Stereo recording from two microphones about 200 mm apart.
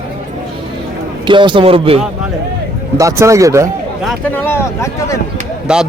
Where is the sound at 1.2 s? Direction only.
25° right (ahead or behind).